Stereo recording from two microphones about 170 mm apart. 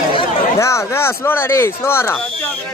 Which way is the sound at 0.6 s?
15° left (ahead or behind).